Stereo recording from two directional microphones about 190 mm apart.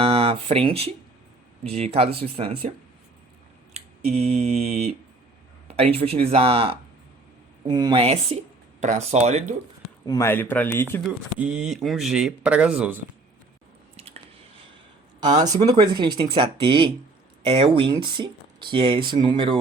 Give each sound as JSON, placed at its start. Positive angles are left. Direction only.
{"t": 0.0, "sound": "speech", "side_deg": -30}
{"t": 3.8, "sound": "mantra", "side_deg": -35}
{"t": 5.6, "sound": "speech", "side_deg": -30}
{"t": 10.1, "sound": "speech", "side_deg": 15}
{"t": 11.0, "sound": "speech", "side_deg": -5}
{"t": 13.9, "sound": "squish", "side_deg": -30}
{"t": 15.2, "sound": "speech", "side_deg": -20}